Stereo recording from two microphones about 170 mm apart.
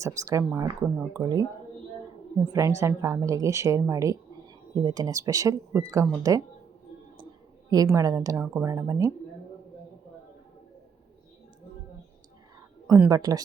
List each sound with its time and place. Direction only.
0.0 s a woman's voice: 20° right (ahead or behind)
7.7 s a woman's voice: 20° right (ahead or behind)
12.9 s a woman's voice: 20° right (ahead or behind)